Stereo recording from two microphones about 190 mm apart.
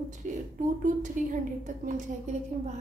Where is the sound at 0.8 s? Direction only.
40° right (ahead or behind).